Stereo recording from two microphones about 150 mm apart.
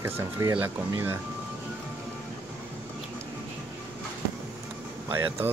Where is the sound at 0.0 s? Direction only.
15° right (ahead or behind).